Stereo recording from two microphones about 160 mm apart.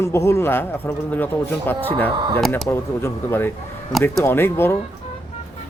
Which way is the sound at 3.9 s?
Centre (ahead or behind).